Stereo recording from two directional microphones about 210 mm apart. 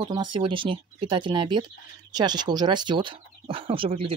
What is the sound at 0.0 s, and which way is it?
Speech, 20° right (ahead or behind).